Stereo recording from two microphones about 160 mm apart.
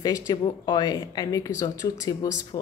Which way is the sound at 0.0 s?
25° left (ahead or behind).